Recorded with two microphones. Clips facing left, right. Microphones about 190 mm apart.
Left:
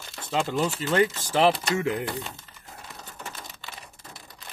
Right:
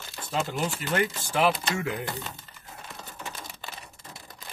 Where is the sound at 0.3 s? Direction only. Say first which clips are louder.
Left 4 dB; 30° left (ahead or behind).